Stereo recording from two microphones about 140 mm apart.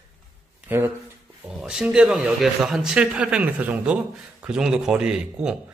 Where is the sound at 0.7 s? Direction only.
15° right (ahead or behind).